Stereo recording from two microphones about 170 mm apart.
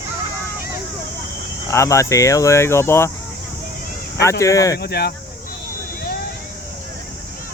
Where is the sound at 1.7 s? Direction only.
15° left (ahead or behind).